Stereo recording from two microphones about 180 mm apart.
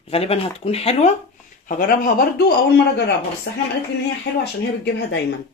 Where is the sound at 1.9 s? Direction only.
55° left (ahead or behind); by 3.6 s 70° left (ahead or behind).